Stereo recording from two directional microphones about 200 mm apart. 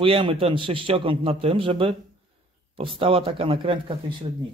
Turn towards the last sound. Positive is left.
turn(degrees=-25)  # may be behind; listen again after turning